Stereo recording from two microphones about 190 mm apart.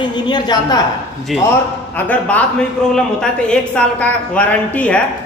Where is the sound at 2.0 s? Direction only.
10° left (ahead or behind).